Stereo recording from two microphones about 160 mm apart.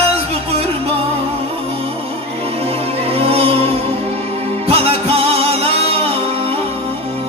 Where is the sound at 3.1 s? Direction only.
40° right (ahead or behind).